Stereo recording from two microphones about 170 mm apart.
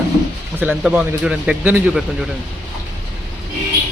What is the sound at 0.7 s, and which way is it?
A man's voice, 5° right (ahead or behind).